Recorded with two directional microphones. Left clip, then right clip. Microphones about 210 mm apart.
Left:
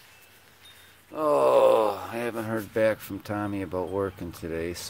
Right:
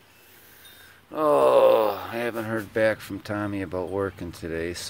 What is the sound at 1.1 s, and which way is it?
Wail, 20° right (ahead or behind).